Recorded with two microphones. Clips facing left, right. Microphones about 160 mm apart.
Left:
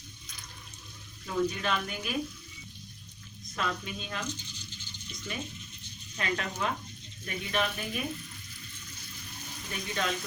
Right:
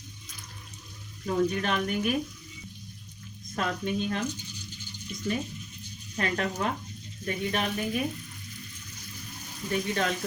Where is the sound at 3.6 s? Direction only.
50° right (ahead or behind).